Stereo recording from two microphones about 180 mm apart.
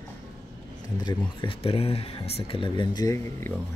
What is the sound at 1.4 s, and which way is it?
Speech, 30° left (ahead or behind).